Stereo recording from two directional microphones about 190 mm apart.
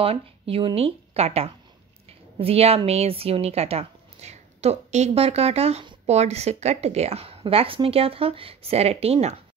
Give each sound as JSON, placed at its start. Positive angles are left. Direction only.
{"t": 0.0, "sound": "a woman's voice", "side_deg": -30}